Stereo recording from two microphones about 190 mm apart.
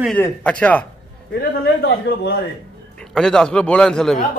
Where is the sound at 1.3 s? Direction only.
55° left (ahead or behind).